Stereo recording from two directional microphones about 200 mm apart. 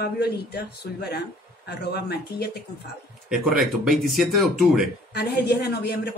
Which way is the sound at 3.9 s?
Centre (ahead or behind).